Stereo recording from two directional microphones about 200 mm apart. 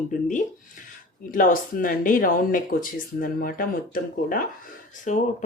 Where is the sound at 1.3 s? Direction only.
45° left (ahead or behind).